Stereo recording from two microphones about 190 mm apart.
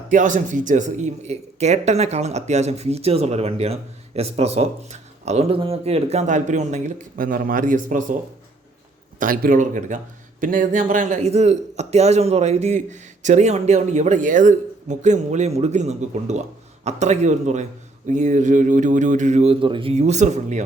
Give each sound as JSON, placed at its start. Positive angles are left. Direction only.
{"t": 0.1, "sound": "speech", "side_deg": -40}
{"t": 9.1, "sound": "speech", "side_deg": -45}